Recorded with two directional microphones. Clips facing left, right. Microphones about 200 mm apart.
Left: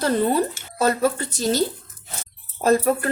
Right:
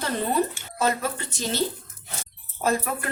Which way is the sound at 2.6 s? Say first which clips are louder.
Left 7 dB; 35° left (ahead or behind).